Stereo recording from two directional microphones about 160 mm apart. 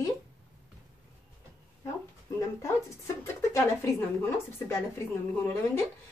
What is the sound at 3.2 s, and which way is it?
Speech, 20° left (ahead or behind).